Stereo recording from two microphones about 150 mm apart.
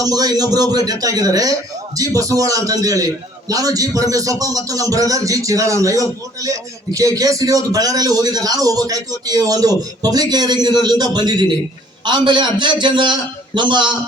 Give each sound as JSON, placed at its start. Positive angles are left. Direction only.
{"t": 0.0, "sound": "a man's voice", "side_deg": -25}